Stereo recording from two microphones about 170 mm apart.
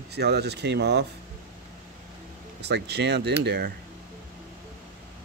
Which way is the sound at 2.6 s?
80° right.